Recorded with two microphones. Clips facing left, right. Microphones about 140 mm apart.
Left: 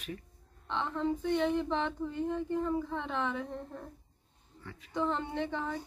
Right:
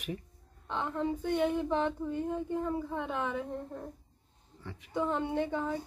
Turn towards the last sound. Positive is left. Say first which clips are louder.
# right 3 dB
turn(degrees=-5)  # may be behind; listen again after turning